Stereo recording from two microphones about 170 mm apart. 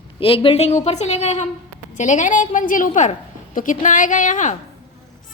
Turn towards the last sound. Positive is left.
turn(degrees=45)  # may be behind; listen again after turning